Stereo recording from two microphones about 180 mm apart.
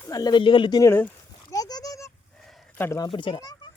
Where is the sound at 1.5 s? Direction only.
20° left (ahead or behind).